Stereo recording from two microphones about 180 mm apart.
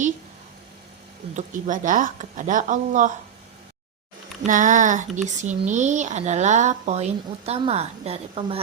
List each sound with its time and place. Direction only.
1.3 s speech: 45° right (ahead or behind)
4.4 s speech: 45° right (ahead or behind)